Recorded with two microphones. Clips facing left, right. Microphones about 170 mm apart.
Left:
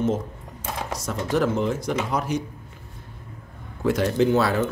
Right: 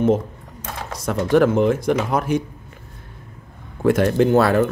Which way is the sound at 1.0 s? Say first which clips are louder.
Right 8 dB; 60° right (ahead or behind).